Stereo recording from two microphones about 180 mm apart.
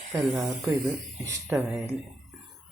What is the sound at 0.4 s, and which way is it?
Speech, 10° right (ahead or behind).